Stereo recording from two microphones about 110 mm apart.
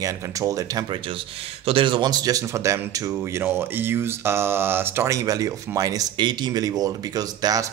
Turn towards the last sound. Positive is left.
turn(degrees=-35)  # may be behind; listen again after turning